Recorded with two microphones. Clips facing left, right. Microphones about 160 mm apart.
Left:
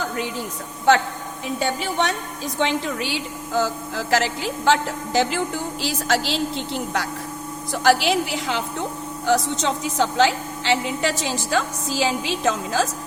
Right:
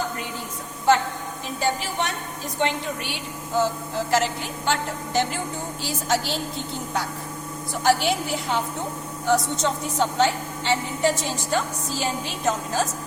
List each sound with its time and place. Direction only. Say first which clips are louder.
1.5 s a woman's voice: left 2 dB; 80° left
2.6 s a woman's voice: left 3 dB; 90° left